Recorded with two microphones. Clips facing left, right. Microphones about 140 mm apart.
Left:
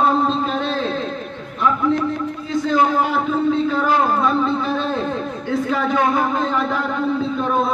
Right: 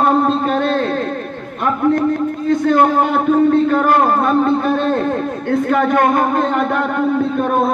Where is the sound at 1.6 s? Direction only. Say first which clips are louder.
Right 3 dB; 55° right (ahead or behind).